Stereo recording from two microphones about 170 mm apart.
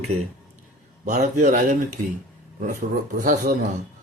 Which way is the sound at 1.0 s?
45° right (ahead or behind).